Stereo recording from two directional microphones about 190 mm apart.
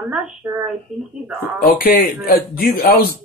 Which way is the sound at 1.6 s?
45° left (ahead or behind).